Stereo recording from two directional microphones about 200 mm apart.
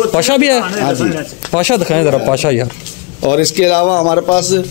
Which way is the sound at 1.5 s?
10° left (ahead or behind).